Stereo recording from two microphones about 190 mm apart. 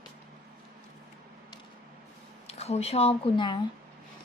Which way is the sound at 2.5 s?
35° left (ahead or behind).